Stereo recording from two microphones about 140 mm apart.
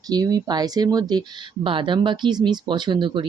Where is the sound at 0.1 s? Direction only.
25° right (ahead or behind).